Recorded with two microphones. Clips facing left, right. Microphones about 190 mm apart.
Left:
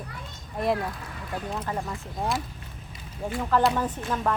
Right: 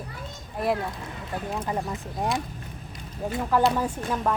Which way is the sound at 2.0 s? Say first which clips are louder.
Right 1 dB; centre (ahead or behind).